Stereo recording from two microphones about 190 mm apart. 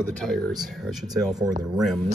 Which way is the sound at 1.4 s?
20° right (ahead or behind).